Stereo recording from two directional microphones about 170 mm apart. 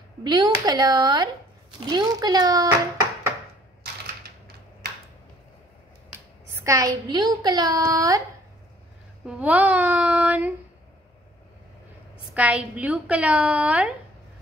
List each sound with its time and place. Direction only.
0.2 s a woman's voice: 25° right (ahead or behind)
6.5 s a woman's voice: 20° right (ahead or behind)
9.2 s a woman's voice: 5° right (ahead or behind)
12.4 s a woman's voice: 10° right (ahead or behind)